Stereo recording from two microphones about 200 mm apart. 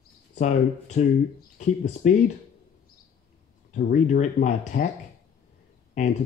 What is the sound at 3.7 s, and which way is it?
Speech, 35° left (ahead or behind).